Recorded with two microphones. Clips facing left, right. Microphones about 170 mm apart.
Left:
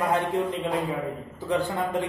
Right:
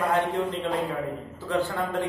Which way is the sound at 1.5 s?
15° left (ahead or behind).